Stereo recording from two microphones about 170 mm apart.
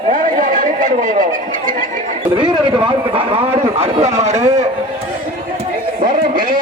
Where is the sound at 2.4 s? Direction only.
25° right (ahead or behind); by 4.5 s 45° right (ahead or behind).